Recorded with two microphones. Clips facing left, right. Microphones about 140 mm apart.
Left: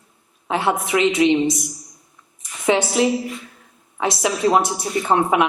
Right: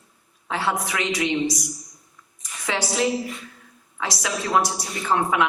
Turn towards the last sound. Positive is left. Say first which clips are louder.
# left 4 dB
turn(degrees=20)  # may be behind; listen again after turning